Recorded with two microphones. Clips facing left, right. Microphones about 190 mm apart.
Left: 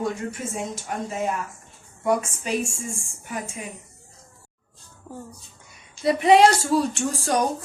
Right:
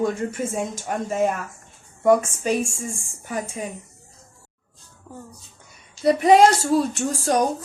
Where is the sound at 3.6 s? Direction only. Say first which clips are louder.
Right 5 dB; 35° right (ahead or behind).